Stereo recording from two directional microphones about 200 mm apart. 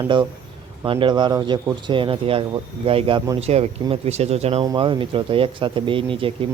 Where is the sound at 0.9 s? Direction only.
25° right (ahead or behind).